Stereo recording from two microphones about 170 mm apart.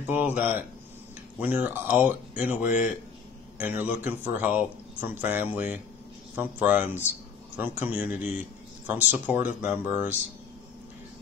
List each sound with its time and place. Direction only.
0.0 s speech: 10° right (ahead or behind)
2.6 s a man's voice: 45° left (ahead or behind)
3.5 s speech: 10° right (ahead or behind)